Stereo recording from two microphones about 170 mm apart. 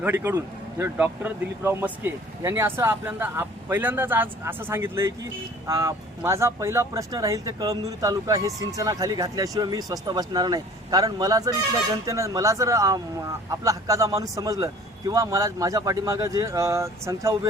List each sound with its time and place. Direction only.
0.0 s speech: 15° right (ahead or behind)